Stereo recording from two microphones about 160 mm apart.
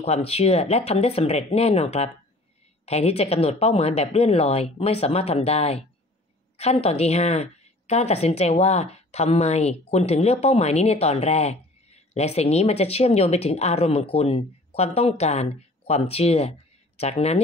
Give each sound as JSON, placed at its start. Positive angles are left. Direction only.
{"t": 0.0, "sound": "a woman's voice", "side_deg": 40}